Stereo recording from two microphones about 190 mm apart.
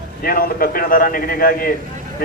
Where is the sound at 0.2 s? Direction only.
50° left (ahead or behind).